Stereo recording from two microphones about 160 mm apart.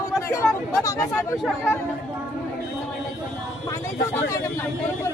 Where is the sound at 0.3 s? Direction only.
20° left (ahead or behind).